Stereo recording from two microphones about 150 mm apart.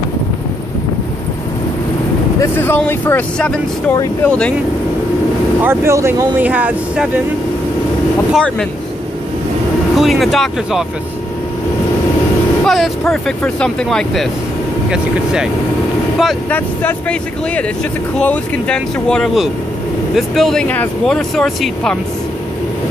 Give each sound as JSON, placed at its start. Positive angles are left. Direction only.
{"t": 2.4, "sound": "speech", "side_deg": 15}
{"t": 5.6, "sound": "speech", "side_deg": -15}
{"t": 8.3, "sound": "speech", "side_deg": 5}
{"t": 9.9, "sound": "speech", "side_deg": 0}
{"t": 12.6, "sound": "speech", "side_deg": 0}
{"t": 16.4, "sound": "speech", "side_deg": 10}